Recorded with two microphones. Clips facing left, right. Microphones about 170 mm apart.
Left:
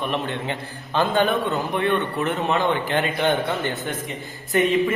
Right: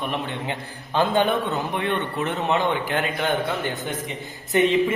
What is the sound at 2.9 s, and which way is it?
Speech, 5° right (ahead or behind).